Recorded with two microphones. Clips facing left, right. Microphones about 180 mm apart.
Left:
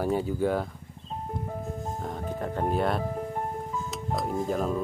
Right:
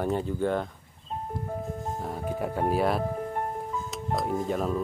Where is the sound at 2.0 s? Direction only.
5° right (ahead or behind).